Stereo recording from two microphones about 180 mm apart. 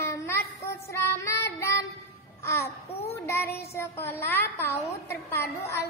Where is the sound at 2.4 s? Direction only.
15° left (ahead or behind).